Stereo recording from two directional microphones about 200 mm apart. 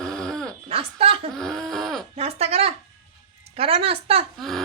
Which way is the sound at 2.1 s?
30° right (ahead or behind).